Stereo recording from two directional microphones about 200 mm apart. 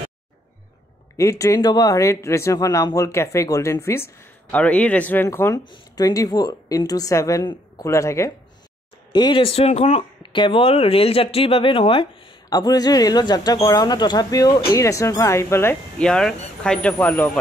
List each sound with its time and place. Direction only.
1.1 s a woman's voice: 15° left (ahead or behind)